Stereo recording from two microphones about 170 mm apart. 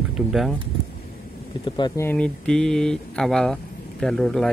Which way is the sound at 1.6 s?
25° left (ahead or behind).